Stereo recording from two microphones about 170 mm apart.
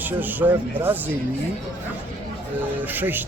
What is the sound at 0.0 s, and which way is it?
Speech, 10° right (ahead or behind).